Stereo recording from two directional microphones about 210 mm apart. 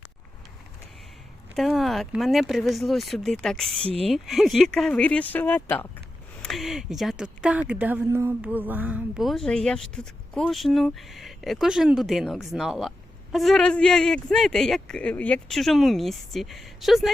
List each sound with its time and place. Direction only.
1.5 s a woman's voice: centre (ahead or behind)
3.8 s speech: 30° right (ahead or behind)
4.1 s a woman's voice: centre (ahead or behind)